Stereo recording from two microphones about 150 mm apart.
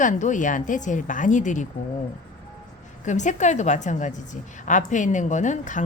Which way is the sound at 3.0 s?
55° left (ahead or behind).